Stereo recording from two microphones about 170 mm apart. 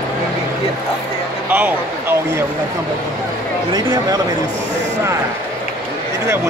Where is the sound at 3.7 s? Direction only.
25° right (ahead or behind).